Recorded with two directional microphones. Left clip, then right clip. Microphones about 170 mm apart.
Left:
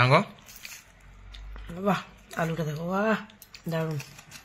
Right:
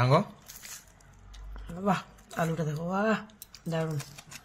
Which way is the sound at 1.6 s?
10° left (ahead or behind).